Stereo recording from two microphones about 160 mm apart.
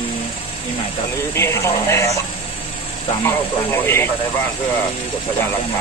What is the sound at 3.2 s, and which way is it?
Speech, 15° left (ahead or behind).